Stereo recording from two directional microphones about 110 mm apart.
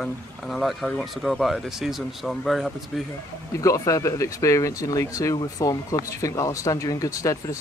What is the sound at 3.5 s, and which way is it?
Speech, 30° left (ahead or behind).